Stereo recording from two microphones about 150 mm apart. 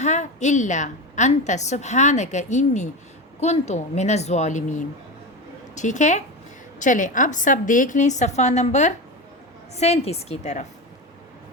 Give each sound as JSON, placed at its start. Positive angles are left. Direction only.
{"t": 0.0, "sound": "a woman's voice", "side_deg": 50}